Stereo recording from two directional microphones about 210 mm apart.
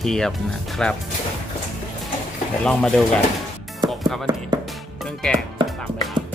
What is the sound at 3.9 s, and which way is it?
Music, centre (ahead or behind).